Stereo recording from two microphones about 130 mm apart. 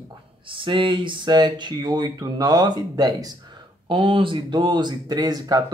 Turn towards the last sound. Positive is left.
turn(degrees=-30)  # may be behind; listen again after turning